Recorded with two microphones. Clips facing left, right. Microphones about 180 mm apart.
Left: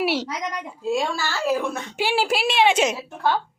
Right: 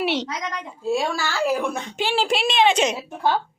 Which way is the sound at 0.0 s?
5° left (ahead or behind).